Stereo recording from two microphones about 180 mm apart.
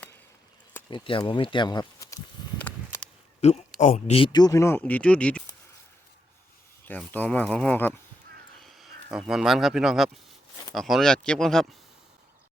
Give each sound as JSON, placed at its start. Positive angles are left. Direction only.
{"t": 0.9, "sound": "speech", "side_deg": 25}
{"t": 2.7, "sound": "a sound", "side_deg": 5}
{"t": 3.4, "sound": "speech", "side_deg": 40}
{"t": 6.8, "sound": "speech", "side_deg": 10}
{"t": 8.6, "sound": "speech", "side_deg": 0}